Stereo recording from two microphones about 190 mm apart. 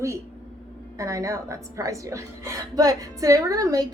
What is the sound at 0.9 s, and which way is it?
A woman's voice, 15° right (ahead or behind).